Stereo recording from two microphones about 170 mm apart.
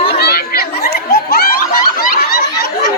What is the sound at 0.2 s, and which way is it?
Chatter, 65° left (ahead or behind).